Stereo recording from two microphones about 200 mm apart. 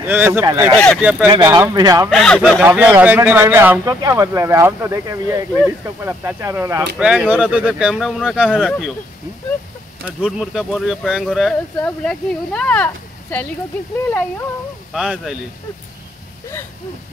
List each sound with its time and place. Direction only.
0.0 s a man's voice: 10° right (ahead or behind)
0.7 s speech: 5° left (ahead or behind)
1.4 s a man's voice: 15° right (ahead or behind)
2.0 s speech: centre (ahead or behind)
2.6 s a man's voice: 10° right (ahead or behind)
10.0 s speech: centre (ahead or behind)
14.9 s speech: centre (ahead or behind)